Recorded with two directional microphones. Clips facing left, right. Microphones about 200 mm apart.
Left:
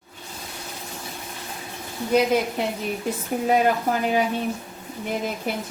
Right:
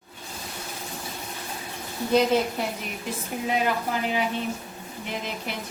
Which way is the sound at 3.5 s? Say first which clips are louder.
Left 5 dB; 45° left (ahead or behind).